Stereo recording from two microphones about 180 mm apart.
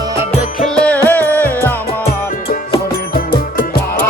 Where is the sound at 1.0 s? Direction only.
10° left (ahead or behind).